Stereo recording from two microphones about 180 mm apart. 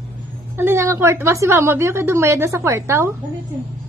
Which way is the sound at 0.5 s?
15° right (ahead or behind).